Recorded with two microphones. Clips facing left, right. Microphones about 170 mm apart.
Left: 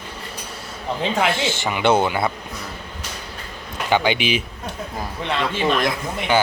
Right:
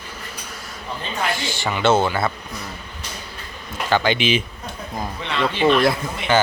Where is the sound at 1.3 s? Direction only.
20° left (ahead or behind).